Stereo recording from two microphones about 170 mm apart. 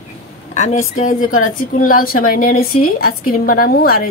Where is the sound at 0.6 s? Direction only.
50° left (ahead or behind).